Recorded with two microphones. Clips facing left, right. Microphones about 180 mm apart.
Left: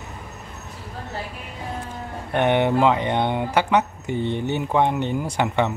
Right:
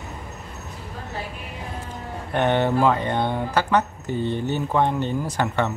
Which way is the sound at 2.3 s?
15° left (ahead or behind).